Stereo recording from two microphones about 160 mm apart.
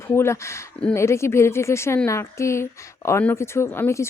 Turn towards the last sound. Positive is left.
turn(degrees=15)  # may be behind; listen again after turning